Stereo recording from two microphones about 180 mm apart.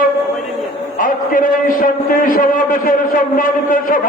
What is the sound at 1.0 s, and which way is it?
A man's voice, 50° left (ahead or behind).